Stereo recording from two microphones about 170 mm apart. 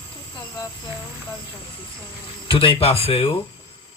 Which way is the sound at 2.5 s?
35° left (ahead or behind).